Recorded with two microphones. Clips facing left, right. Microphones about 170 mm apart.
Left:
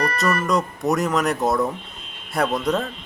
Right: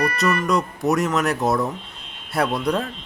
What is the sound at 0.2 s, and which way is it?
Speech, centre (ahead or behind).